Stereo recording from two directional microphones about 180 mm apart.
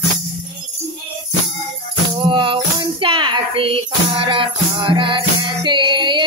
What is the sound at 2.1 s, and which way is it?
Music, 25° right (ahead or behind).